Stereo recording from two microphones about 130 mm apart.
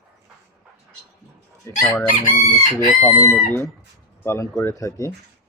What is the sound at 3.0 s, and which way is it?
Speech, 15° left (ahead or behind).